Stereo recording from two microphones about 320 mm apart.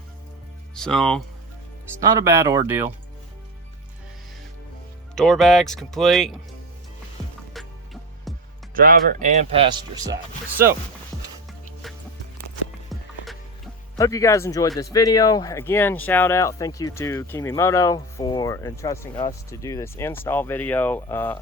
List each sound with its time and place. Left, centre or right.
0.8 s speech: centre
2.0 s speech: centre
5.1 s speech: centre
7.6 s music: centre
8.7 s speech: right; by 10.2 s centre
12.9 s music: centre
13.9 s speech: centre
14.9 s speech: centre